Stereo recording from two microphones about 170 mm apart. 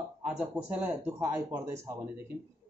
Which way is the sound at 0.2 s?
5° right (ahead or behind).